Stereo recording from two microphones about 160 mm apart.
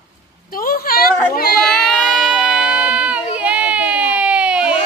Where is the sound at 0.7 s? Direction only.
65° left (ahead or behind).